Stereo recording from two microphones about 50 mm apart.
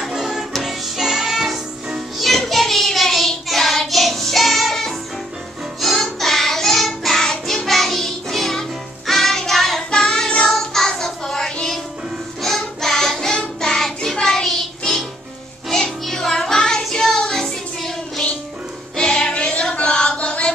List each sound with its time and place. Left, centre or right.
0.0 s music: centre
6.1 s child singing: centre
9.8 s child singing: centre